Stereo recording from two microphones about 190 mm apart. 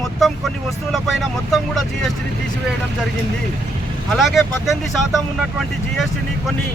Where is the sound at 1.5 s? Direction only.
Centre (ahead or behind).